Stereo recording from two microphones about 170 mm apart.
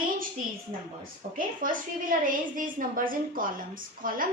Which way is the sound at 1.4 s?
55° right (ahead or behind).